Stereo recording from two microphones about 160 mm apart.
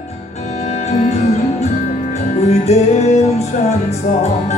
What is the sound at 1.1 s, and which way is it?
Music, 45° left (ahead or behind).